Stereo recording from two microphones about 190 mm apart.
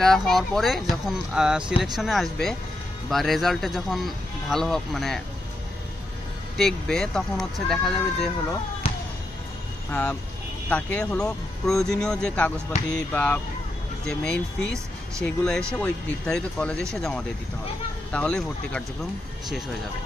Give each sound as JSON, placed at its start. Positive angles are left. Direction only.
{"t": 0.0, "sound": "speech", "side_deg": 0}
{"t": 6.5, "sound": "speech", "side_deg": 0}
{"t": 8.8, "sound": "basketball bounce", "side_deg": 30}
{"t": 9.8, "sound": "speech", "side_deg": 10}